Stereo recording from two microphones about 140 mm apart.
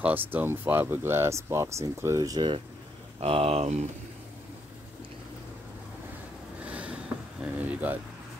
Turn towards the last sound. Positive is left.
turn(degrees=-10)  # may be behind; listen again after turning